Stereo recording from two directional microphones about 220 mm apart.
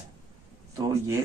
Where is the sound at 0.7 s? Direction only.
15° right (ahead or behind).